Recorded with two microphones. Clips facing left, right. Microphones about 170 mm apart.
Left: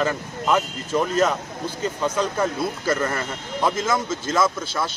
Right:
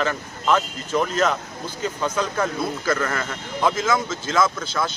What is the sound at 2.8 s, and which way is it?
Speech, 25° left (ahead or behind).